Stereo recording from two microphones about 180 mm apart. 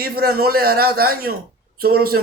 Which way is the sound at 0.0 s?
60° right (ahead or behind).